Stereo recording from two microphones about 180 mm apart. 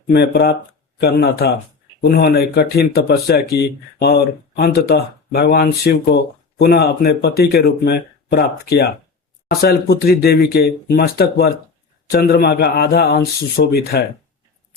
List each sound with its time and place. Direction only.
0.1 s speech: 65° left (ahead or behind)